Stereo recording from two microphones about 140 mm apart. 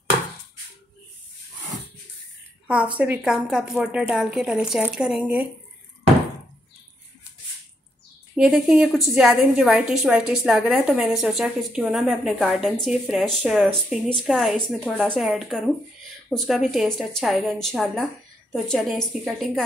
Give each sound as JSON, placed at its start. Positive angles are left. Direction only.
{"t": 3.0, "sound": "a woman's voice", "side_deg": -10}
{"t": 8.4, "sound": "a woman's voice", "side_deg": 0}